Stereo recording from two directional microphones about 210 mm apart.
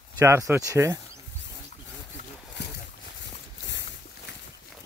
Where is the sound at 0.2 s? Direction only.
10° right (ahead or behind).